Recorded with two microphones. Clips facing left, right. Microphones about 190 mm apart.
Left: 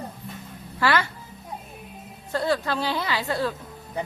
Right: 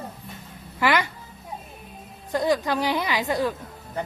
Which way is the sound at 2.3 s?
15° right (ahead or behind).